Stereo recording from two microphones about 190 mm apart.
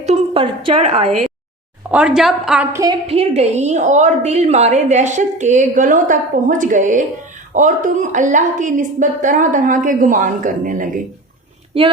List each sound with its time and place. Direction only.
0.0 s a woman's voice: 30° right (ahead or behind)
1.9 s a woman's voice: 5° right (ahead or behind)
3.1 s a woman's voice: 35° right (ahead or behind)
11.7 s a woman's voice: 30° right (ahead or behind)